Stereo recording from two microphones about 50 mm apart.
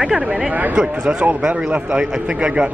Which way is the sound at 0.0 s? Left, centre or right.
Centre.